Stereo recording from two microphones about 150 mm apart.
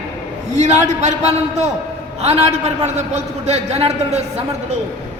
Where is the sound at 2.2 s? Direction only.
45° right (ahead or behind).